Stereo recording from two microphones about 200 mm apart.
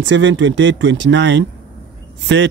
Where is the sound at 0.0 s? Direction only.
65° right (ahead or behind).